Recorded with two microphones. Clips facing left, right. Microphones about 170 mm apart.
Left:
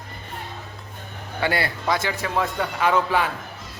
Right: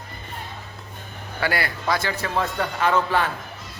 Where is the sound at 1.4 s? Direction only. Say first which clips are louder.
Left 1 dB; 25° left (ahead or behind).